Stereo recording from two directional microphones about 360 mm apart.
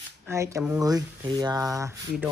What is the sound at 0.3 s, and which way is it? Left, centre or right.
Speech, centre.